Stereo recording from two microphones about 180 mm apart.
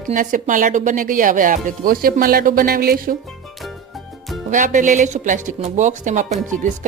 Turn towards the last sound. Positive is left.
turn(degrees=-45)  # may be behind; listen again after turning